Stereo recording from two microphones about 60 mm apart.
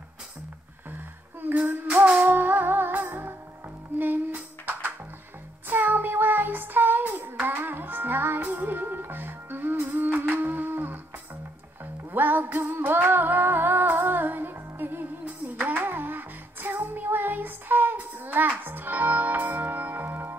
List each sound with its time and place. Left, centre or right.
1.4 s music: right
4.0 s a sound: right
5.7 s child singing: right
11.8 s music: right